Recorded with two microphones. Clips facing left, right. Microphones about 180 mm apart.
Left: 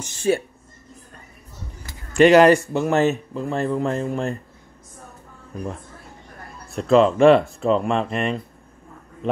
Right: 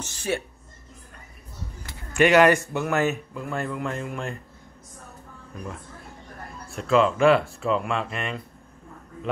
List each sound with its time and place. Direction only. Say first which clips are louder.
0.0 s speech: left 7 dB; 25° left (ahead or behind)
2.1 s speech: left 5 dB; 35° left (ahead or behind)
6.7 s speech: left 5 dB; 35° left (ahead or behind)